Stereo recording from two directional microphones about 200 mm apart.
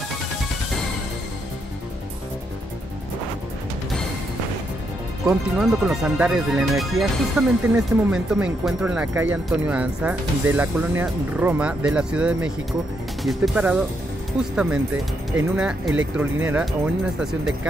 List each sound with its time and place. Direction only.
5.2 s speech: centre (ahead or behind)